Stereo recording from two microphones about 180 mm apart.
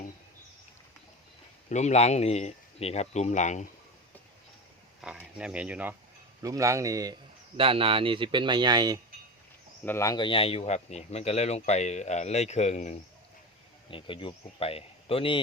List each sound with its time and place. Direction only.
1.7 s speech: 40° left (ahead or behind)
5.2 s speech: 5° right (ahead or behind)
6.4 s speech: 20° right (ahead or behind)
9.8 s speech: 15° left (ahead or behind); by 13.0 s 40° left (ahead or behind)
13.9 s speech: 30° left (ahead or behind)